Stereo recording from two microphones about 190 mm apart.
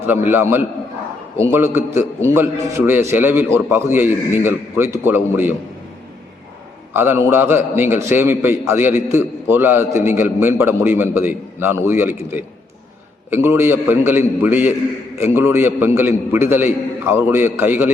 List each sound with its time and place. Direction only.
0.1 s a man's voice: 10° right (ahead or behind)
6.9 s a man's voice: 10° right (ahead or behind)